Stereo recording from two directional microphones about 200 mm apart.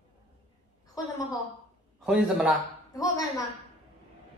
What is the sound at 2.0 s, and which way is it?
Speech, 5° right (ahead or behind).